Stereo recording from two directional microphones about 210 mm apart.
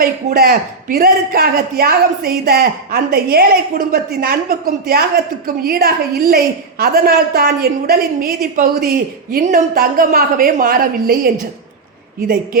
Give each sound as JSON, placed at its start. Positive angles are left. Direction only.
{"t": 0.0, "sound": "a woman's voice", "side_deg": -45}